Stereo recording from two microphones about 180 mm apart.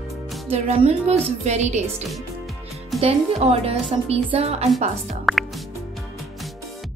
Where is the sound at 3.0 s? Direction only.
35° right (ahead or behind).